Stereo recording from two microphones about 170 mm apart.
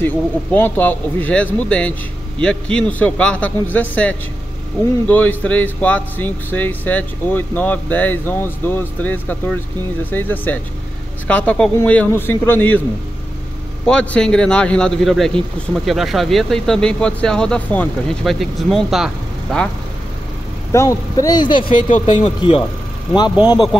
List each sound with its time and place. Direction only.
0.0 s speech: 10° left (ahead or behind)
13.8 s a man's voice: 5° left (ahead or behind)
20.7 s speech: 20° left (ahead or behind)